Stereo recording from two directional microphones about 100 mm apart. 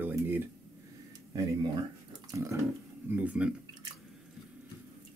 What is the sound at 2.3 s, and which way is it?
Pig, 30° right (ahead or behind).